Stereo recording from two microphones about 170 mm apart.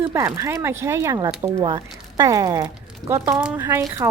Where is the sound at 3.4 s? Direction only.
5° right (ahead or behind).